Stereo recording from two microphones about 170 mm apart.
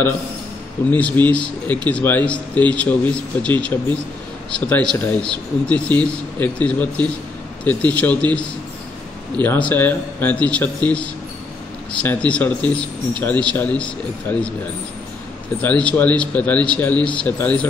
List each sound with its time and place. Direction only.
0.8 s speech: 10° left (ahead or behind)
9.4 s speech: 10° left (ahead or behind)
15.6 s speech: 5° left (ahead or behind)